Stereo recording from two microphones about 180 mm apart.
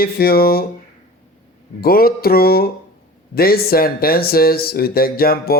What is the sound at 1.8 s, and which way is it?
Speech, 55° left (ahead or behind).